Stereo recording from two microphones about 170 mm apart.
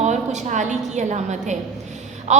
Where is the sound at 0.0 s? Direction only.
45° right (ahead or behind).